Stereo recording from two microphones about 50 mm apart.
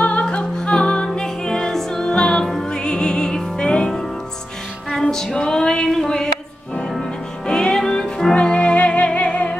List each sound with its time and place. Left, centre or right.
0.0 s music: left
5.0 s music: centre